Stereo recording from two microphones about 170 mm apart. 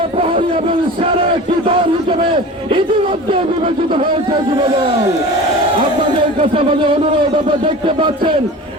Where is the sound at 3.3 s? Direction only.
30° right (ahead or behind).